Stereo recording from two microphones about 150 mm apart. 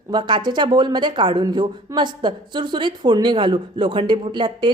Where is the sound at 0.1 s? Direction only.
30° right (ahead or behind).